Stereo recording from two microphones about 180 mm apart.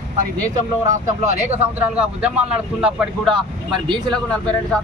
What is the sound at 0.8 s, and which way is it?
Speech, 40° right (ahead or behind).